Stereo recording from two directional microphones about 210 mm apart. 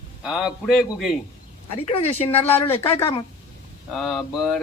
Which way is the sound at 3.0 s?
25° left (ahead or behind).